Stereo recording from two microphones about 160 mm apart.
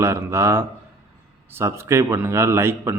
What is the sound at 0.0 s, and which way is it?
A man's voice, 15° right (ahead or behind).